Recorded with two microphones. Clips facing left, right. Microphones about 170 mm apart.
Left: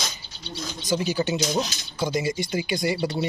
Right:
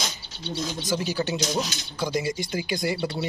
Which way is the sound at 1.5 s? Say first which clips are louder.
Left 2 dB; 20° left (ahead or behind).